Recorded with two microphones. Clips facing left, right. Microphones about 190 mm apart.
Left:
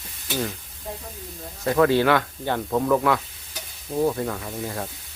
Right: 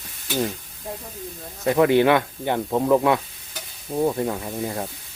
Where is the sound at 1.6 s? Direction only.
20° right (ahead or behind).